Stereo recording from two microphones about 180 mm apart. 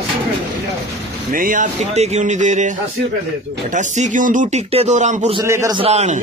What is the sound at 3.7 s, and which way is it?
Speech, 45° right (ahead or behind).